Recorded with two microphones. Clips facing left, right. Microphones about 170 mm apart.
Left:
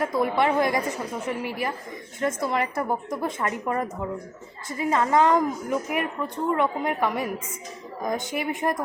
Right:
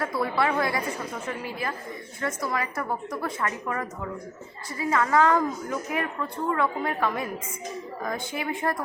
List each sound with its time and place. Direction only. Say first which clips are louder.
0.0 s a woman's voice: left 3 dB; 20° left (ahead or behind)
2.2 s a woman's voice: left 4 dB; 25° left (ahead or behind)